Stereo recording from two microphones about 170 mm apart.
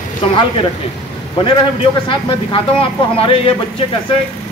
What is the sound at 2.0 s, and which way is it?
Speech, 30° left (ahead or behind).